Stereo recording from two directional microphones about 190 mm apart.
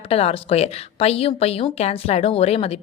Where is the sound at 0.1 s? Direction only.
30° left (ahead or behind).